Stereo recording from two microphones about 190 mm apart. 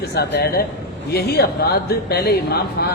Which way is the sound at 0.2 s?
55° left (ahead or behind).